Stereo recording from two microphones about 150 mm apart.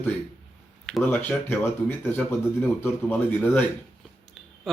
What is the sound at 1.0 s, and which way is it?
Speech, 15° left (ahead or behind).